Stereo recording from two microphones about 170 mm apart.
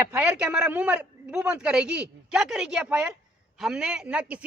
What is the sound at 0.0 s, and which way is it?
Speech, 10° right (ahead or behind).